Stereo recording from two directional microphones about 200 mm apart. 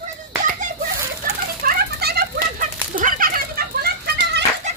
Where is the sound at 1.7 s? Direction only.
50° right (ahead or behind).